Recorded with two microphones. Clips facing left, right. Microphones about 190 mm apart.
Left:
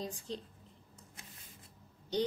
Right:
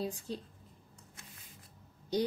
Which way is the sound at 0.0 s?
10° right (ahead or behind).